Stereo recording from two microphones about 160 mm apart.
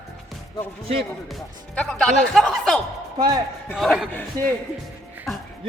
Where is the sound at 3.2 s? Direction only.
25° right (ahead or behind).